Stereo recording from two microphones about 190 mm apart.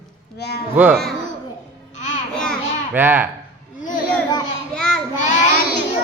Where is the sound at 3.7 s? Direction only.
45° left (ahead or behind).